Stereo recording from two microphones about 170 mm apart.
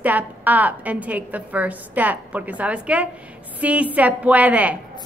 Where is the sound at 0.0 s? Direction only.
10° right (ahead or behind).